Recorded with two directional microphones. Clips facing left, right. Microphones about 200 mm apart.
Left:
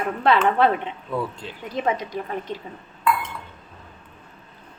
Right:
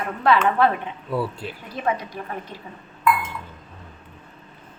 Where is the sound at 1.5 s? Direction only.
20° left (ahead or behind).